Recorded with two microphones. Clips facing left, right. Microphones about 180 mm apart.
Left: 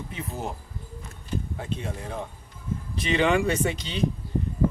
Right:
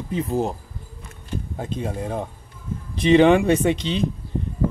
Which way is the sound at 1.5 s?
40° right (ahead or behind).